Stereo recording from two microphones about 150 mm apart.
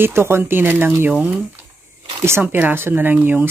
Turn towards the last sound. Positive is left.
turn(degrees=-10)  # may be behind; listen again after turning